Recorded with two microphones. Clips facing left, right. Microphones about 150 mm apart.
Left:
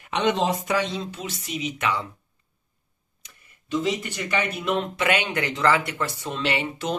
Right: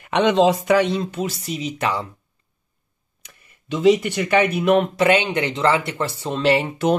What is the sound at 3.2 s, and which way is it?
Speech, 65° right (ahead or behind).